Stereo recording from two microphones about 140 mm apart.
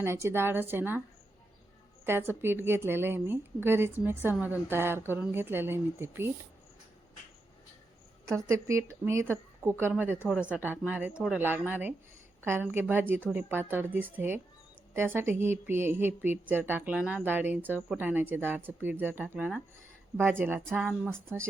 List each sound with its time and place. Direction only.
0.0 s speech: 20° right (ahead or behind)
2.0 s speech: 15° right (ahead or behind)
8.2 s a woman's voice: 20° right (ahead or behind)